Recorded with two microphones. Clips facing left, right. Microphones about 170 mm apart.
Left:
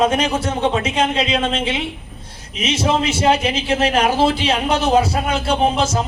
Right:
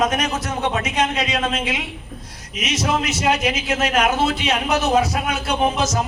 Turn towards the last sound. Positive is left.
turn(degrees=30)  # may be behind; listen again after turning